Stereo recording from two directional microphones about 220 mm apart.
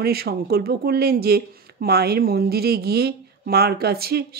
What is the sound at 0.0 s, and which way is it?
Speech, 45° right (ahead or behind).